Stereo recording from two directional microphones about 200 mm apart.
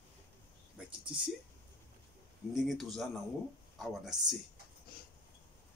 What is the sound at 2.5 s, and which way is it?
Speech, centre (ahead or behind).